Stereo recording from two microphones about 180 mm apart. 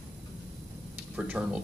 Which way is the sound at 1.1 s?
5° right (ahead or behind).